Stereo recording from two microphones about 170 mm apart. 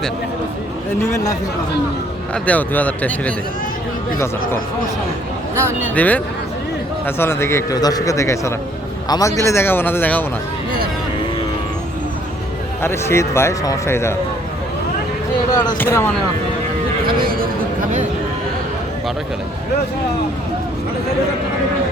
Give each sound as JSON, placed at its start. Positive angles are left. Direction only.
{"t": 1.1, "sound": "speech", "side_deg": 20}
{"t": 2.3, "sound": "a man's voice", "side_deg": 10}
{"t": 5.5, "sound": "speech", "side_deg": -15}
{"t": 5.9, "sound": "a man's voice", "side_deg": 10}
{"t": 12.8, "sound": "a man's voice", "side_deg": 15}
{"t": 15.8, "sound": "a man's voice", "side_deg": 15}